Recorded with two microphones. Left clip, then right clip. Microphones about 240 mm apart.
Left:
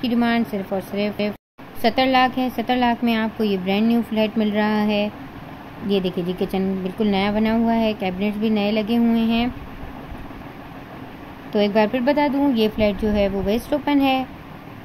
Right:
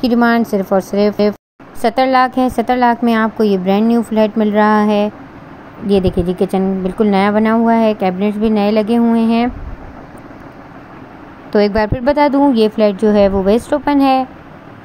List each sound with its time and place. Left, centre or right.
0.0 s a woman's voice: right
11.5 s a woman's voice: centre